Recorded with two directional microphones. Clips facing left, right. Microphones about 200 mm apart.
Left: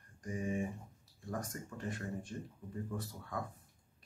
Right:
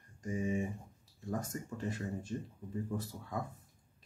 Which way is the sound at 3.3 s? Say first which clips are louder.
Right 2 dB; 25° right (ahead or behind).